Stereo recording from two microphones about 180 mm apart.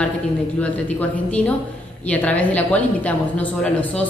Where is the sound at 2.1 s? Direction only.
10° left (ahead or behind).